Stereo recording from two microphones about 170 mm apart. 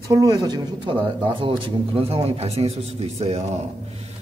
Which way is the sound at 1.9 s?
35° right (ahead or behind).